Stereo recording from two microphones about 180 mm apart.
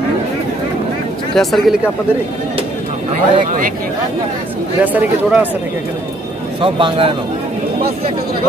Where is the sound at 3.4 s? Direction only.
45° right (ahead or behind).